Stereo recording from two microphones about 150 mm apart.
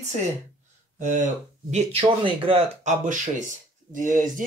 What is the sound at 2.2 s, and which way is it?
Speech, 35° right (ahead or behind).